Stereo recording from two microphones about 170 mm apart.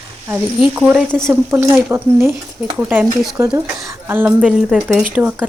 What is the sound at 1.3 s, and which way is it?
Speech, 15° right (ahead or behind).